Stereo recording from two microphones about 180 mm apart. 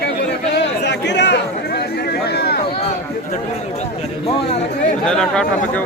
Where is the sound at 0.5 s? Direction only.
70° left (ahead or behind).